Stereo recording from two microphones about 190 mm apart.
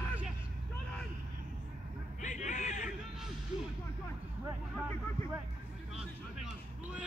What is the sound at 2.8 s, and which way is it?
Music, centre (ahead or behind).